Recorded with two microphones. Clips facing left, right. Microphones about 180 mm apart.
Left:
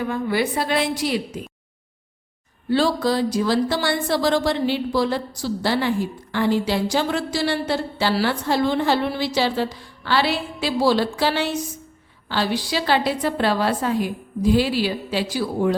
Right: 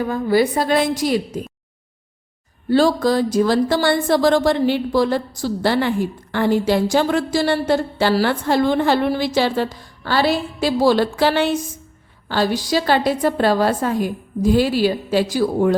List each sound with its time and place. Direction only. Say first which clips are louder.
0.0 s a woman's voice: right 5 dB; 40° right (ahead or behind)
2.6 s a woman's voice: right 4 dB; 45° right (ahead or behind)